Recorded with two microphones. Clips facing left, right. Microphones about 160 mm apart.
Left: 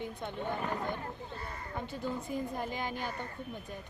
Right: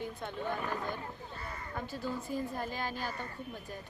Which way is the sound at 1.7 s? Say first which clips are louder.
Left 1 dB; 20° left (ahead or behind).